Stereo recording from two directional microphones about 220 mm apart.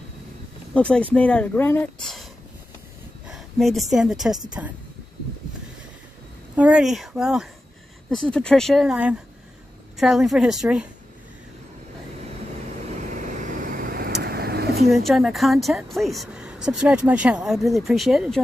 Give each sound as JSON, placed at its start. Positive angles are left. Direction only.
{"t": 0.7, "sound": "a woman's voice", "side_deg": 5}
{"t": 3.3, "sound": "a woman's voice", "side_deg": 0}
{"t": 6.5, "sound": "a woman's voice", "side_deg": -5}
{"t": 12.9, "sound": "vehicle", "side_deg": -35}
{"t": 15.0, "sound": "a woman's voice", "side_deg": 0}